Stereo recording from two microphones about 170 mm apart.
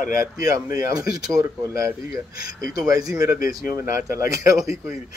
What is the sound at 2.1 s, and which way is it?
Speech, 65° left (ahead or behind).